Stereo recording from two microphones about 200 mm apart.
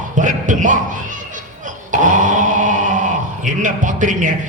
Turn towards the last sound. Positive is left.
turn(degrees=-40)  # may be behind; listen again after turning